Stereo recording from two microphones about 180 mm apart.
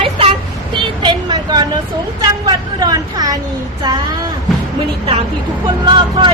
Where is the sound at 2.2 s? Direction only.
20° right (ahead or behind).